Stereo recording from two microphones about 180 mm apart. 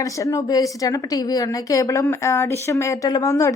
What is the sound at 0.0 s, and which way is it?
A woman's voice, 15° left (ahead or behind).